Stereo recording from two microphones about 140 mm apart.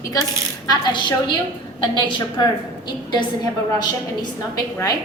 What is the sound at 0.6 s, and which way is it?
A woman's voice, 30° left (ahead or behind).